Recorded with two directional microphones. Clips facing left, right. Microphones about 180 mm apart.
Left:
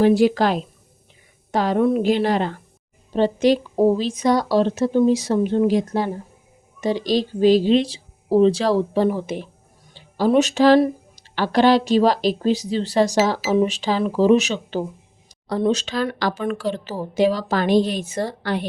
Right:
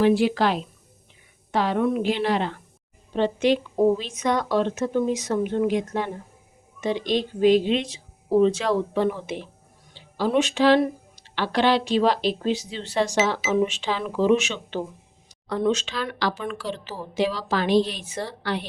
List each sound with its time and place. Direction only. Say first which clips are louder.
0.0 s a woman's voice: left 4 dB; 40° left (ahead or behind)